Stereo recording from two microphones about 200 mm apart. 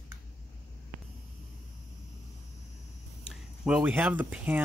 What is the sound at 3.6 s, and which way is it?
Speech, 5° right (ahead or behind).